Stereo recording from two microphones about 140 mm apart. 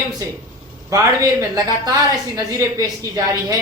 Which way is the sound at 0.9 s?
25° right (ahead or behind).